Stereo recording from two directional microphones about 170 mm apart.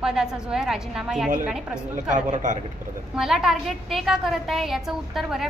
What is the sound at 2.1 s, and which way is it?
Speech, 50° right (ahead or behind).